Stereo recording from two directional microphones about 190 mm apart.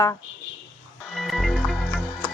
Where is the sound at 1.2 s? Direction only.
Centre (ahead or behind).